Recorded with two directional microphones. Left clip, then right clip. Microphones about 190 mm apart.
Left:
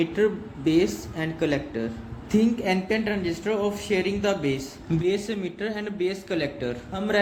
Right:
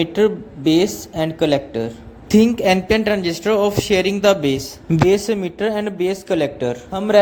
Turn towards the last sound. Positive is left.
turn(degrees=-35)  # may be behind; listen again after turning